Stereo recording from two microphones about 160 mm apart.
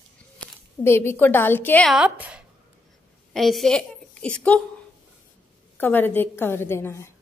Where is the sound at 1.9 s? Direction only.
5° right (ahead or behind).